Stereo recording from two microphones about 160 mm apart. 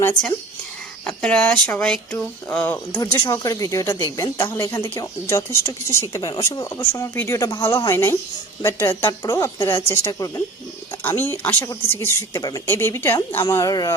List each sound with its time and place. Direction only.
1.0 s speech: 5° left (ahead or behind)